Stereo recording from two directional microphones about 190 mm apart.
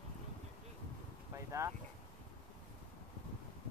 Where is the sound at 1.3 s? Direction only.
15° right (ahead or behind).